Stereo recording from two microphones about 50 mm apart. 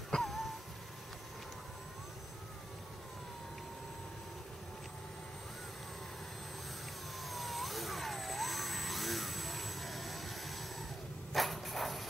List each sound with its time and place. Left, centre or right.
0.1 s music: centre
7.2 s vehicle: centre
11.3 s a sound: centre